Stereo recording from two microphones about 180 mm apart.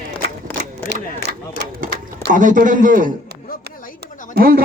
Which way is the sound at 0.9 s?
70° right (ahead or behind).